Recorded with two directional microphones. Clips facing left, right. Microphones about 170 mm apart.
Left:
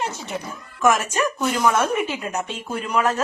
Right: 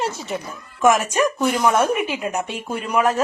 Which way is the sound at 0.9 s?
15° right (ahead or behind).